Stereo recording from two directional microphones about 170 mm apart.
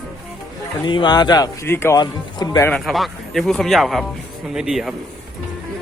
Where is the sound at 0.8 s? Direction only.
25° left (ahead or behind).